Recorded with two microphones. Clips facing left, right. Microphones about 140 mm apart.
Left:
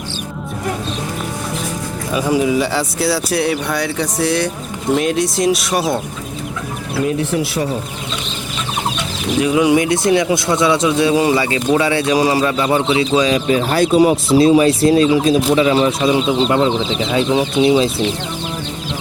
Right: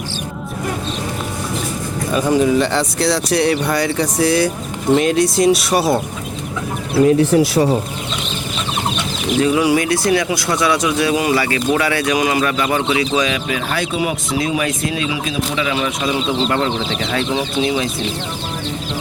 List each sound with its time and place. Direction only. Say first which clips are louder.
2.1 s speech: right 1 dB; 10° left (ahead or behind)
6.9 s speech: right 6 dB; 35° right (ahead or behind)
9.4 s speech: left 2 dB; 20° left (ahead or behind)
16.5 s speech: left 4 dB; 15° left (ahead or behind)